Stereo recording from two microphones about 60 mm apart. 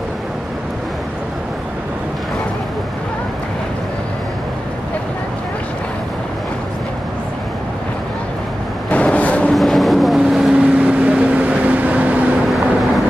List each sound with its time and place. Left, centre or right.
8.9 s a sound: left
9.5 s vehicle: centre
10.8 s vehicle: right
12.4 s vehicle: centre